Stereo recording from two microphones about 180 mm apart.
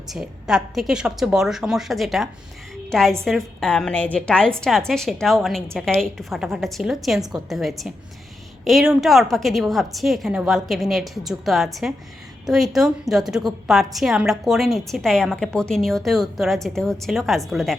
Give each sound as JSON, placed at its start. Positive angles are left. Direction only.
{"t": 0.1, "sound": "a woman's voice", "side_deg": -5}